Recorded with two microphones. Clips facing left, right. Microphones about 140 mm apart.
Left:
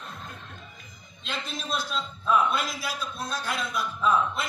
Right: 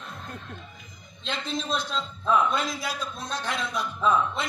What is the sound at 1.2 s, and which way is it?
A man's voice, 10° left (ahead or behind).